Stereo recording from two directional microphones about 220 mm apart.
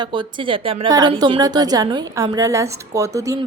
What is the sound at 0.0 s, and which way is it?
A woman's voice, 20° right (ahead or behind).